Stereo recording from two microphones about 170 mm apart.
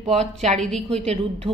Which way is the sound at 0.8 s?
40° right (ahead or behind).